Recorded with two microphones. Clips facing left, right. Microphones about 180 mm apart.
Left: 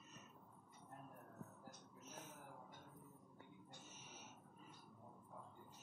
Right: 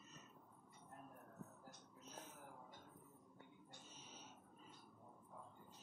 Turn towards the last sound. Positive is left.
turn(degrees=-30)  # may be behind; listen again after turning